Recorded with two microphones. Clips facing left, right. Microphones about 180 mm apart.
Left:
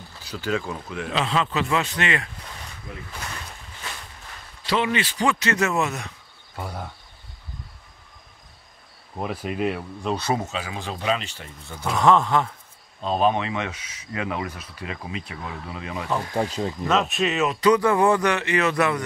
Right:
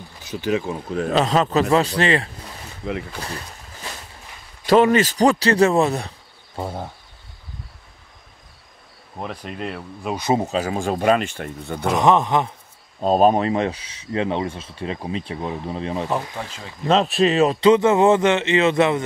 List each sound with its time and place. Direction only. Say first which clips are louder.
0.2 s speech: right 4 dB; 20° right (ahead or behind)
2.8 s speech: right 14 dB; 80° right
4.6 s speech: right 9 dB; 45° right (ahead or behind); by 6.9 s 25° right (ahead or behind)
9.2 s speech: left 4 dB; 5° left (ahead or behind)
10.0 s speech: right 2 dB; 15° right (ahead or behind)
10.3 s speech: right 7 dB; 35° right (ahead or behind); by 11.9 s 60° right (ahead or behind)
11.9 s a man's voice: right 2 dB; 20° right (ahead or behind)
13.0 s speech: right 6 dB; 40° right (ahead or behind)
16.3 s speech: left 8 dB; 40° left (ahead or behind)
16.8 s a man's voice: right 7 dB; 35° right (ahead or behind)